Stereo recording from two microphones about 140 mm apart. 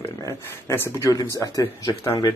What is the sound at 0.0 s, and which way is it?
Speech, 20° left (ahead or behind).